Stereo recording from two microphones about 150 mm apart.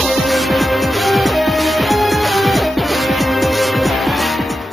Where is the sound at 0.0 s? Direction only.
Centre (ahead or behind).